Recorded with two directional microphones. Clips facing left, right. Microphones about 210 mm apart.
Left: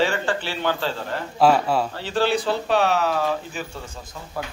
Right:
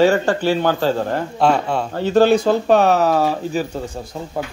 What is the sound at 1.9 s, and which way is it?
A man's voice, 45° right (ahead or behind).